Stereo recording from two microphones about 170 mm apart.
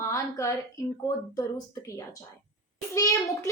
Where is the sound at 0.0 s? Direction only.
15° left (ahead or behind).